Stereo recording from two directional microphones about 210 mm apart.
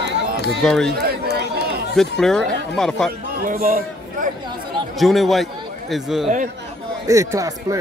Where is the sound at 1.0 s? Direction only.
45° right (ahead or behind).